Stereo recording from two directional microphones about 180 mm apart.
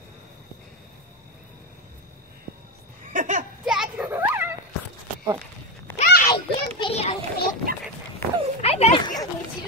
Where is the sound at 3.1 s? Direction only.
45° right (ahead or behind).